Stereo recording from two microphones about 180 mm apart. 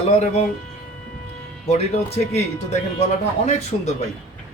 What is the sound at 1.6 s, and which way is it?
Speech, 35° left (ahead or behind).